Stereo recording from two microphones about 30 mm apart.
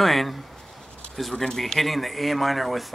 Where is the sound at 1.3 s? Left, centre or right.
Centre.